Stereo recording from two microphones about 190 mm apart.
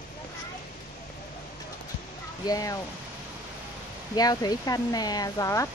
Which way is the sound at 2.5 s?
20° left (ahead or behind).